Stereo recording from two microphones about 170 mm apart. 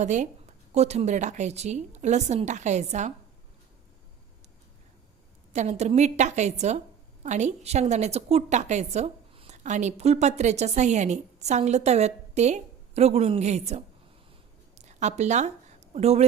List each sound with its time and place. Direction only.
0.0 s a woman's voice: 45° right (ahead or behind)
5.5 s a woman's voice: 40° right (ahead or behind)